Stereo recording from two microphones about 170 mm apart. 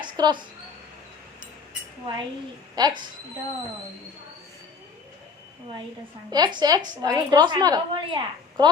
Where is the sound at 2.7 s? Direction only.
25° right (ahead or behind).